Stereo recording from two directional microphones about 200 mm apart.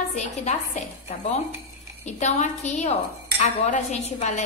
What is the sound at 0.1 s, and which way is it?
A woman's voice, 35° left (ahead or behind).